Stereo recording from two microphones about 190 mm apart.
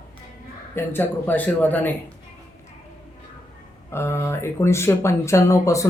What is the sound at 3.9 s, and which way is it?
Speech, 15° left (ahead or behind).